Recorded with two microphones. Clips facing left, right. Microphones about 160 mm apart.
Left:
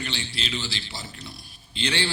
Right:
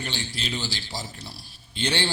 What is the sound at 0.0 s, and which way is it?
A man's voice, 45° right (ahead or behind).